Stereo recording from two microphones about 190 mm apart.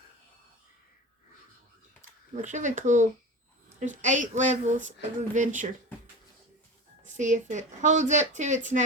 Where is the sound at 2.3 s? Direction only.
40° right (ahead or behind).